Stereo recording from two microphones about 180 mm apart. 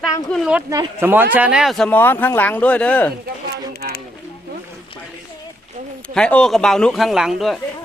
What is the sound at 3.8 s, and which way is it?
Speech, 55° right (ahead or behind).